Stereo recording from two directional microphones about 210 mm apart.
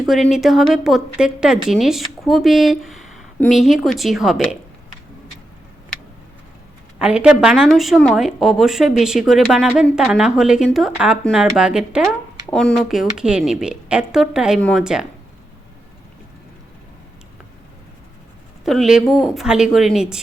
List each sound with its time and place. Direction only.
0.0 s a woman's voice: centre (ahead or behind)
7.0 s a woman's voice: 5° right (ahead or behind)
18.6 s a woman's voice: centre (ahead or behind)